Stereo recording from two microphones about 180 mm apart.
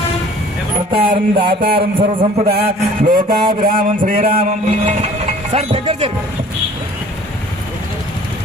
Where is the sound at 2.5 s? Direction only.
60° right (ahead or behind).